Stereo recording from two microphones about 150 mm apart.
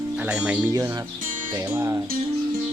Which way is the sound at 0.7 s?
20° right (ahead or behind).